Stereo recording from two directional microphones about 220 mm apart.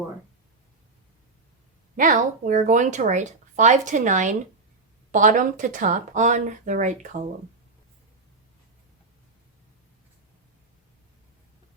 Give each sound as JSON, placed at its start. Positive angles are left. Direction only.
{"t": 2.0, "sound": "speech", "side_deg": -35}